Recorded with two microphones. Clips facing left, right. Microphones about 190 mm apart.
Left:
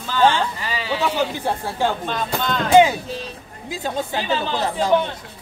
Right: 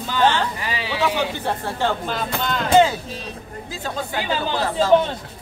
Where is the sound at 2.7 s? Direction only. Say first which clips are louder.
Left 2 dB; 15° left (ahead or behind).